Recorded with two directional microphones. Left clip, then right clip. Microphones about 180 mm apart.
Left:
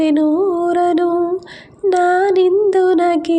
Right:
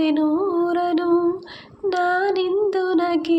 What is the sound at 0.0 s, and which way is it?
Music, 40° left (ahead or behind).